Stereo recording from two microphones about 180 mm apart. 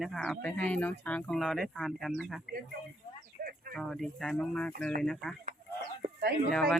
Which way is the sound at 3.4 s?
50° right (ahead or behind).